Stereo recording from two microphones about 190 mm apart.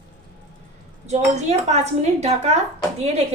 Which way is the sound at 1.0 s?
35° right (ahead or behind).